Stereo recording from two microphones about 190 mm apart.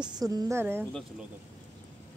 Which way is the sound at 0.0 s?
20° right (ahead or behind).